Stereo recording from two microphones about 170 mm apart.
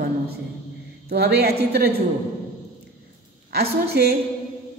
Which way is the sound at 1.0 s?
70° right (ahead or behind).